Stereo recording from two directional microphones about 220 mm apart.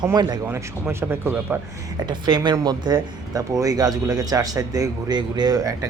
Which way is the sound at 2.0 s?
20° right (ahead or behind).